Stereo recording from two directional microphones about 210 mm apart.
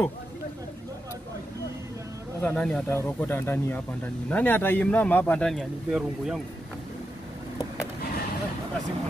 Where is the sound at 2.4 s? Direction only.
5° left (ahead or behind).